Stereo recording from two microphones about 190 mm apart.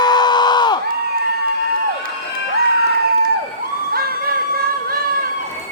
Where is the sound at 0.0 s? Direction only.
20° left (ahead or behind).